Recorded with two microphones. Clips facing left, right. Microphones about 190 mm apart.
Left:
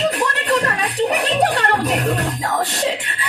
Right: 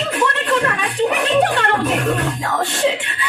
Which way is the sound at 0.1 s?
35° left (ahead or behind).